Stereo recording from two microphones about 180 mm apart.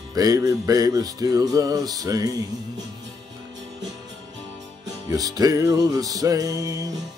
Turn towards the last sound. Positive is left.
turn(degrees=-20)  # may be behind; listen again after turning